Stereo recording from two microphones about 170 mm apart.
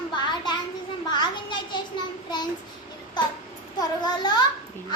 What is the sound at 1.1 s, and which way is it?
Children playing, 25° left (ahead or behind).